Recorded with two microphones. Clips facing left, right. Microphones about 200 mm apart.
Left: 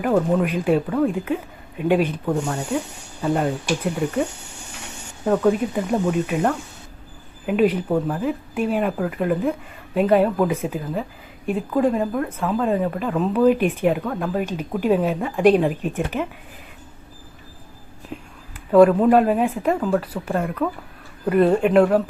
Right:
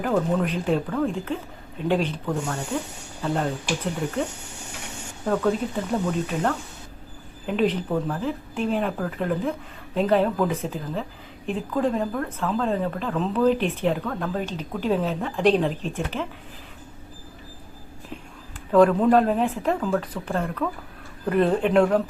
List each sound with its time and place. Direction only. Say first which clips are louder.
0.0 s speech: left 4 dB; 10° left (ahead or behind)
5.2 s speech: left 4 dB; 10° left (ahead or behind)
18.1 s whispering: left 4 dB; centre (ahead or behind)
18.7 s speech: left 3 dB; 10° left (ahead or behind)